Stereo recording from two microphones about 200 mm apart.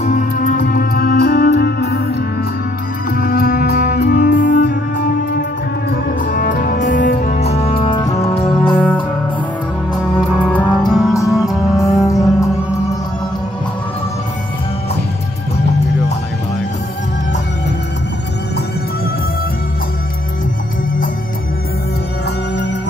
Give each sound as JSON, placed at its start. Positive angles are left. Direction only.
{"t": 0.0, "sound": "music", "side_deg": 40}
{"t": 3.1, "sound": "music", "side_deg": 50}
{"t": 7.2, "sound": "music", "side_deg": 35}
{"t": 8.7, "sound": "music", "side_deg": 10}
{"t": 10.3, "sound": "music", "side_deg": 5}
{"t": 11.1, "sound": "music", "side_deg": 15}